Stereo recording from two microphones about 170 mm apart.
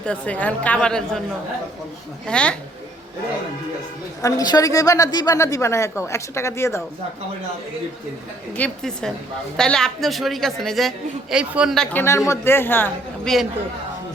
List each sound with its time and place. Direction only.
0.0 s a woman's voice: 5° left (ahead or behind)
2.2 s a woman's voice: 5° left (ahead or behind)
4.2 s a woman's voice: 20° left (ahead or behind)
8.5 s a man's voice: 5° left (ahead or behind)